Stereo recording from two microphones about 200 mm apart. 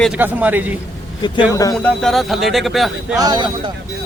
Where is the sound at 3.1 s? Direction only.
20° right (ahead or behind).